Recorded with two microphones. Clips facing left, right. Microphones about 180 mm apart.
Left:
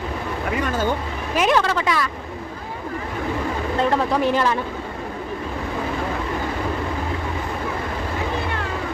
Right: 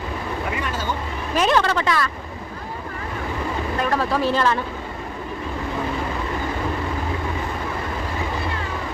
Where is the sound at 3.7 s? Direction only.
25° left (ahead or behind).